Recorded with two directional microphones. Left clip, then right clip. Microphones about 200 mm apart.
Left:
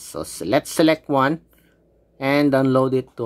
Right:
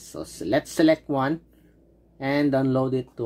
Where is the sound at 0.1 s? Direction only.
30° left (ahead or behind).